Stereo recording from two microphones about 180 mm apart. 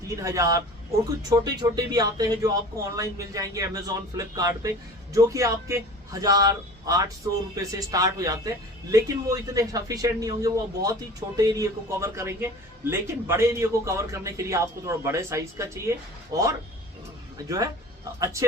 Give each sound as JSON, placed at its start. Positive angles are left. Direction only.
{"t": 0.2, "sound": "a man's voice", "side_deg": -20}